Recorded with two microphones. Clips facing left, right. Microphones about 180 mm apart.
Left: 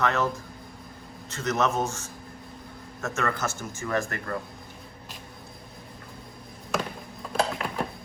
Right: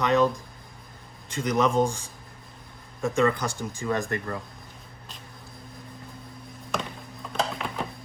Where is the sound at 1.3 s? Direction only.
10° right (ahead or behind).